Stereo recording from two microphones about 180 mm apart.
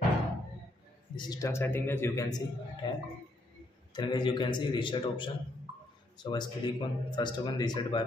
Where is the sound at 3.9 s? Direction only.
25° left (ahead or behind).